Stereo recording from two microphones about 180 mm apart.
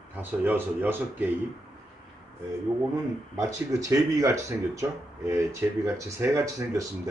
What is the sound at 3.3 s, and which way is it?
Speech, 20° right (ahead or behind).